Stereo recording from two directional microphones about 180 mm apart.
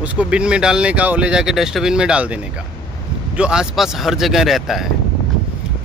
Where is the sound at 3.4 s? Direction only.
5° right (ahead or behind).